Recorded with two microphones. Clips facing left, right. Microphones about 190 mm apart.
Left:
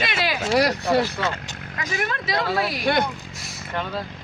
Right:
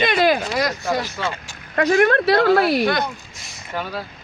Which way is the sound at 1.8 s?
60° right (ahead or behind).